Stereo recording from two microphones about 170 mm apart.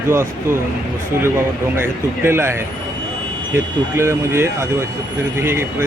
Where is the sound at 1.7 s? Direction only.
15° right (ahead or behind).